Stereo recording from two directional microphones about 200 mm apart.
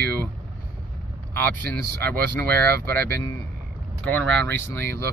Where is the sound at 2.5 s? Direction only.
50° right (ahead or behind).